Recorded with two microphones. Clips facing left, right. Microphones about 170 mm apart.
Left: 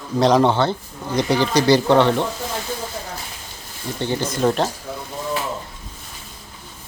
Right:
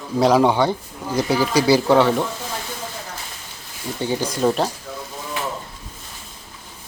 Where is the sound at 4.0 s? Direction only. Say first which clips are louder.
Even; 10° right (ahead or behind).